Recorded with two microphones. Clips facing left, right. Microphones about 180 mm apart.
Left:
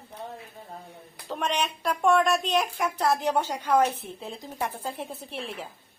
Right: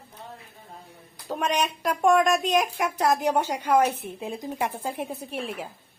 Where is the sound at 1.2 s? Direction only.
10° right (ahead or behind).